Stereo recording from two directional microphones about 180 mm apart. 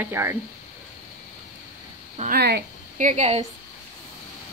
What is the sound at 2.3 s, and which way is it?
Speech, 65° right (ahead or behind).